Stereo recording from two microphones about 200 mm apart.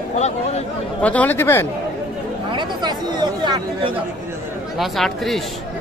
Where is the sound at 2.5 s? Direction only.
20° right (ahead or behind).